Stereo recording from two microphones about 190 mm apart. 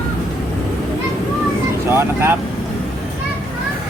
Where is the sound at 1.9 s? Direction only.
10° right (ahead or behind).